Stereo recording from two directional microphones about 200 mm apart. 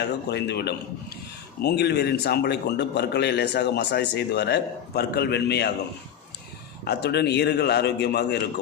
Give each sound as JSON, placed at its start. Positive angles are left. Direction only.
{"t": 0.3, "sound": "a man's voice", "side_deg": 55}
{"t": 6.8, "sound": "a man's voice", "side_deg": 55}